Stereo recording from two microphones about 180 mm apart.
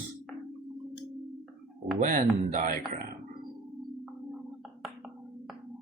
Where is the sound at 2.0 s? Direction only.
45° right (ahead or behind).